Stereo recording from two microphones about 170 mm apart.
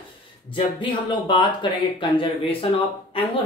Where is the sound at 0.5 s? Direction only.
30° left (ahead or behind).